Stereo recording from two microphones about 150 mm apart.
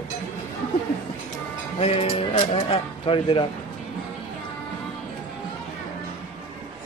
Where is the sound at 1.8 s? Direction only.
45° left (ahead or behind).